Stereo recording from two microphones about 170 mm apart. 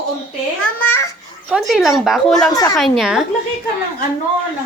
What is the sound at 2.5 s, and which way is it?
Speech, 20° left (ahead or behind).